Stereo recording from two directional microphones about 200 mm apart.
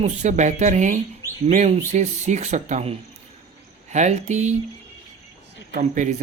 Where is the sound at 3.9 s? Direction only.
35° right (ahead or behind).